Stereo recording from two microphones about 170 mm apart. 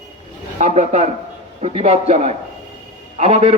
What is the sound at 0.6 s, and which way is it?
A man's voice, 40° right (ahead or behind).